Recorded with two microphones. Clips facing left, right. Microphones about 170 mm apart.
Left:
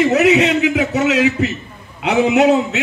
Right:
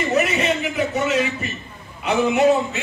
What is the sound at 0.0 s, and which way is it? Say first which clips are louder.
A man's voice: left 8 dB; 80° left.